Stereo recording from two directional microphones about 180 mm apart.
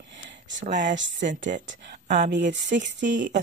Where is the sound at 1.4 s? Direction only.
85° right.